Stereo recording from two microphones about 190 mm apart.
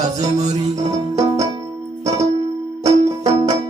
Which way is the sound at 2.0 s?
35° right (ahead or behind).